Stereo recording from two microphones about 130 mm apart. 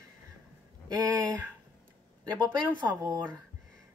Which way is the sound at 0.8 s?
30° right (ahead or behind).